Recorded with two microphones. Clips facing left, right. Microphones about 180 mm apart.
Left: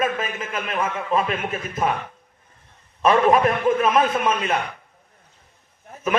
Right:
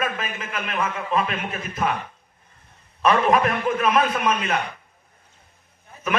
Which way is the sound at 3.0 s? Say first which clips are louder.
Left 2 dB; 25° left (ahead or behind).